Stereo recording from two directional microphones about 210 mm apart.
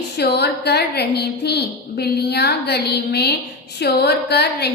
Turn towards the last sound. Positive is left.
turn(degrees=50)  # may be behind; listen again after turning